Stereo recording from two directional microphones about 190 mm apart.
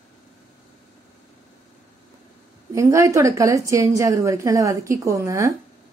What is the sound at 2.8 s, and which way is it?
A woman's voice, 15° right (ahead or behind).